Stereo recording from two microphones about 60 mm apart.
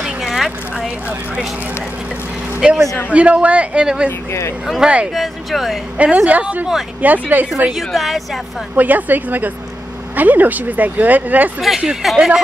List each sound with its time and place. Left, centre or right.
0.0 s a sound: centre
2.6 s speech: centre
4.3 s speech: left
4.7 s speech: centre
5.1 s a woman's voice: centre
5.9 s speech: right
7.7 s a woman's voice: centre
8.7 s speech: right
11.8 s speech: centre